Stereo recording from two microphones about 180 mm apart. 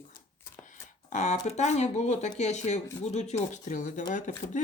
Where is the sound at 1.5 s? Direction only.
40° left (ahead or behind).